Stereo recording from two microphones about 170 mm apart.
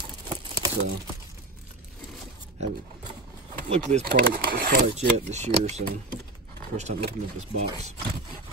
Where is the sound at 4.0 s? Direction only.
70° right (ahead or behind).